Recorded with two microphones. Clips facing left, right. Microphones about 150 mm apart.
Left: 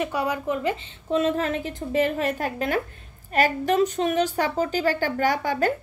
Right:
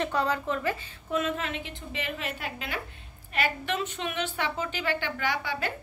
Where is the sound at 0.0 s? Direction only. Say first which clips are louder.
Left 2 dB; 10° left (ahead or behind).